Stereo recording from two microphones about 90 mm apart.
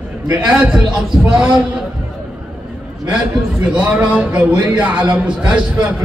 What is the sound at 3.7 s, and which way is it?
A man's voice, 15° right (ahead or behind).